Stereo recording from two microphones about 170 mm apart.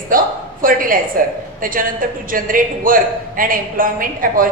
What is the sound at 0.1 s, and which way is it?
A woman's voice, 55° right (ahead or behind).